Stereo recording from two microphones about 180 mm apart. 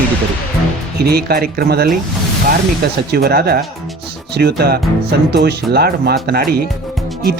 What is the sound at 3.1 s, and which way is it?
Speech, 60° right (ahead or behind).